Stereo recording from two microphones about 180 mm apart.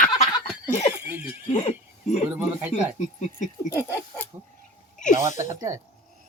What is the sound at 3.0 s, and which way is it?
Speech, 40° left (ahead or behind).